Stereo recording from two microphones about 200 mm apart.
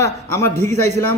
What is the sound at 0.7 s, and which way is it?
Speech, 35° right (ahead or behind).